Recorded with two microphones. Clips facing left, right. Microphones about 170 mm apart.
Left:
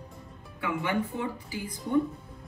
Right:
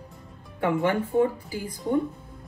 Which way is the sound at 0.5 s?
40° right (ahead or behind).